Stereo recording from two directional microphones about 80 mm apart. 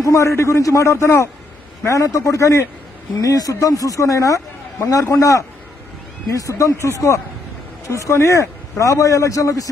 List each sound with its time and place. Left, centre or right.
0.0 s a man's voice: left